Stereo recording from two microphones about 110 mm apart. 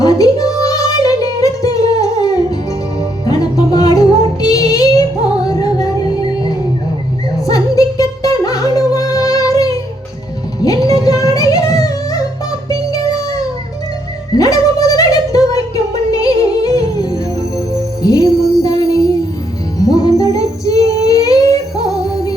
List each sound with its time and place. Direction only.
0.0 s music: 30° left (ahead or behind)
7.4 s music: 30° left (ahead or behind)
14.3 s a sound: 30° left (ahead or behind)
18.0 s music: 30° left (ahead or behind)